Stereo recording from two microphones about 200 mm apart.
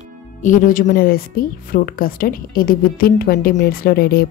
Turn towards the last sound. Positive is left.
turn(degrees=50)  # may be behind; listen again after turning